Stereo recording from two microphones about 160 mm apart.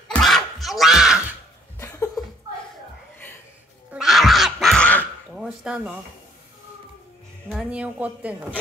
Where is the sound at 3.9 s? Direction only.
Centre (ahead or behind).